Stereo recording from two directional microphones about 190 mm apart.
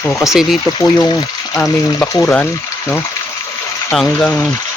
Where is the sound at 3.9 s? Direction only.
5° left (ahead or behind).